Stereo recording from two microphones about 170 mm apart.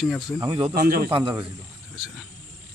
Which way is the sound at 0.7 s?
65° right (ahead or behind).